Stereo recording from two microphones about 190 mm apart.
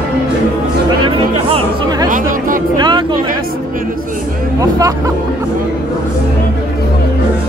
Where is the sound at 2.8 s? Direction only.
25° right (ahead or behind).